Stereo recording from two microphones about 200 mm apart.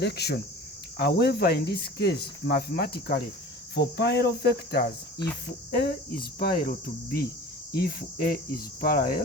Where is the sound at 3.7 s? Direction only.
55° left (ahead or behind).